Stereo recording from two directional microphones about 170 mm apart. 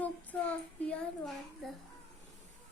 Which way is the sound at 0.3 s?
5° left (ahead or behind).